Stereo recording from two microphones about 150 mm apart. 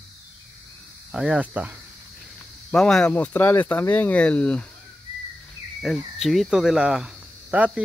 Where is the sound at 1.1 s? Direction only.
5° right (ahead or behind).